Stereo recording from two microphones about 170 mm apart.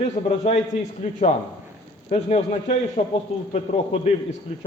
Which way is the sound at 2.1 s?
40° left (ahead or behind).